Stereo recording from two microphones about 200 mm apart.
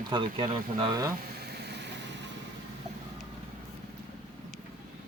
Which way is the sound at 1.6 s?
55° right (ahead or behind).